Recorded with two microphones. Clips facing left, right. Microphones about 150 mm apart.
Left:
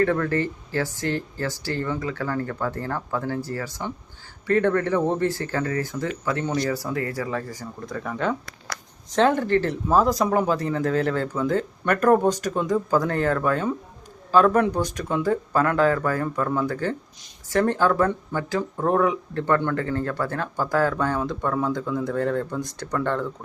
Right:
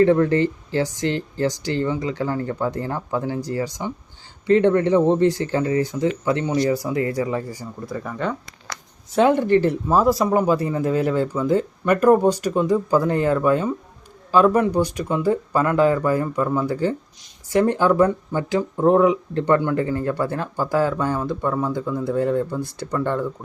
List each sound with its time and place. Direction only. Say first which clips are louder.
0.0 s speech: right 6 dB; 20° right (ahead or behind); by 8.4 s centre (ahead or behind)
9.1 s speech: right 3 dB; 15° right (ahead or behind)